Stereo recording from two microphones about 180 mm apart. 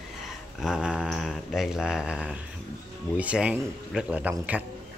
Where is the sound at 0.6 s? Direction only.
5° right (ahead or behind).